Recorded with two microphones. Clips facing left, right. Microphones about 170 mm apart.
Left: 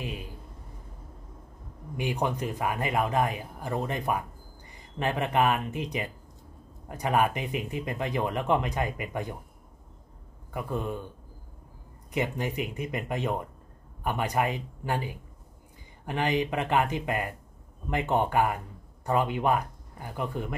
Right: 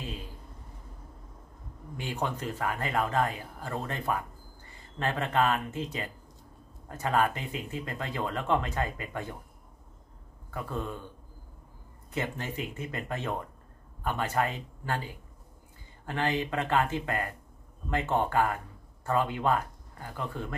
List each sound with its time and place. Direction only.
0.0 s a sound: 15° left (ahead or behind)
2.0 s speech: 15° left (ahead or behind)
10.5 s speech: 15° left (ahead or behind)
12.1 s speech: 15° left (ahead or behind)